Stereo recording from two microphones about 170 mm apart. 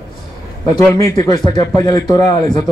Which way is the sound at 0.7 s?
20° left (ahead or behind).